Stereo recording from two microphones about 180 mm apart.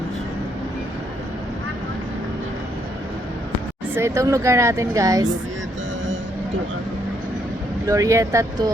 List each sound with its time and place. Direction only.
3.9 s a woman's voice: 15° right (ahead or behind)
7.9 s a woman's voice: 20° right (ahead or behind)